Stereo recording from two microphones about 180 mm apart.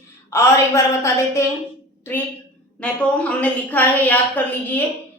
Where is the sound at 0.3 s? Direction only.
15° left (ahead or behind).